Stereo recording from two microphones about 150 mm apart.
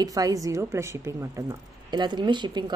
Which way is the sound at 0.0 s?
25° right (ahead or behind).